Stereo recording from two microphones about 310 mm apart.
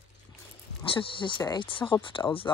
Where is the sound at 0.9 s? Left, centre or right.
Centre.